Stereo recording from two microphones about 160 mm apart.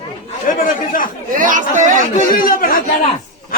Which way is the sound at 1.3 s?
55° right (ahead or behind).